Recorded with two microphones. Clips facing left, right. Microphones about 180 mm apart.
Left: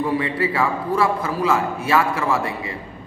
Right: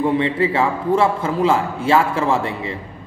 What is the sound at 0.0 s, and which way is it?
A man's voice, 25° right (ahead or behind).